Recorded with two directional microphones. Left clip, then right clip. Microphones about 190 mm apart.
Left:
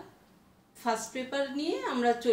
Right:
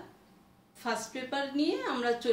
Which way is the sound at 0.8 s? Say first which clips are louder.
Left 3 dB; 20° right (ahead or behind).